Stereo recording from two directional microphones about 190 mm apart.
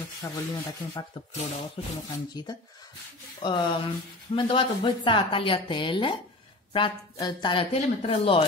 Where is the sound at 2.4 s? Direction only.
20° left (ahead or behind).